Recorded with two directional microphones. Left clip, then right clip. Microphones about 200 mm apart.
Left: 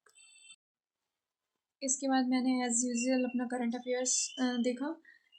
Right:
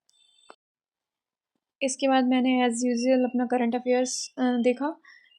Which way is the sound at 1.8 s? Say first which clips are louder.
Right 9 dB; 30° right (ahead or behind).